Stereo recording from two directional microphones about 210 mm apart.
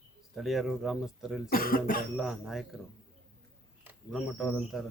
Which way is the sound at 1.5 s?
45° left (ahead or behind).